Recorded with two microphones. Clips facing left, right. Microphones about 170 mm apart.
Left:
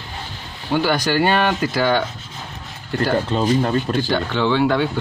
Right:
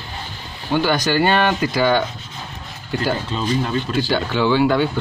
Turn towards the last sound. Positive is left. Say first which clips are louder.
# right 1 dB
turn(degrees=-5)  # may be behind; listen again after turning